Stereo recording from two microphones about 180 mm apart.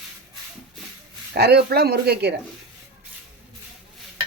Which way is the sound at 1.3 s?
65° right (ahead or behind).